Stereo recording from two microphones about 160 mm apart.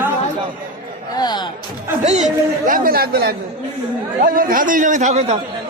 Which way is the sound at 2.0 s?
45° right (ahead or behind).